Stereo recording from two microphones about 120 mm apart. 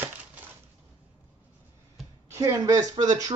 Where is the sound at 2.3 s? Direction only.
25° right (ahead or behind).